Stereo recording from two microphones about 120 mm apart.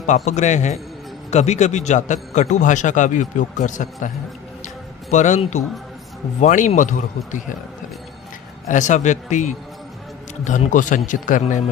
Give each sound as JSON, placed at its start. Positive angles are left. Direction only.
{"t": 0.1, "sound": "a man's voice", "side_deg": 80}
{"t": 1.3, "sound": "a man's voice", "side_deg": 70}
{"t": 5.1, "sound": "a man's voice", "side_deg": 85}
{"t": 6.4, "sound": "a man's voice", "side_deg": 80}
{"t": 8.6, "sound": "a man's voice", "side_deg": 90}